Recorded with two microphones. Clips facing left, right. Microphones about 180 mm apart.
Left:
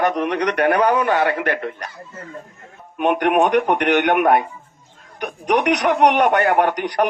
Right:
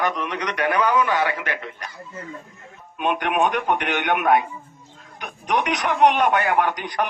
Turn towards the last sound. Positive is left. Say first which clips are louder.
# left 4 dB
turn(degrees=60)  # may be behind; listen again after turning